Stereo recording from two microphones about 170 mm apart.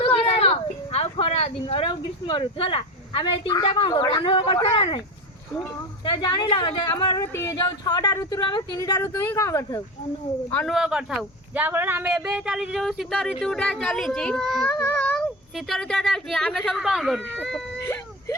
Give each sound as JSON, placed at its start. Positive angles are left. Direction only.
{"t": 0.0, "sound": "a sound", "side_deg": 35}
{"t": 6.1, "sound": "speech", "side_deg": 25}
{"t": 10.7, "sound": "speech", "side_deg": -5}